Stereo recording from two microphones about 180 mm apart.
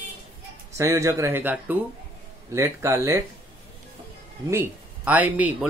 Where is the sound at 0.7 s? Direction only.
15° right (ahead or behind).